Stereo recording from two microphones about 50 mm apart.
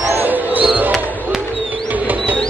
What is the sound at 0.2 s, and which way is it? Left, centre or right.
Music, right.